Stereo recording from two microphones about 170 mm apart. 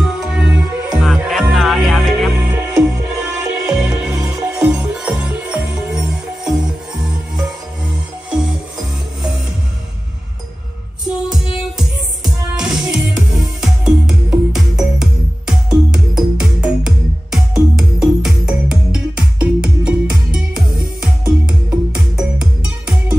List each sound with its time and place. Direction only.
0.2 s music: 5° right (ahead or behind)
2.3 s music: 10° right (ahead or behind)
8.3 s music: centre (ahead or behind)
12.5 s music: 5° right (ahead or behind)